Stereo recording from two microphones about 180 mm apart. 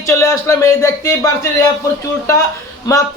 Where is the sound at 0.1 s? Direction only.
15° left (ahead or behind).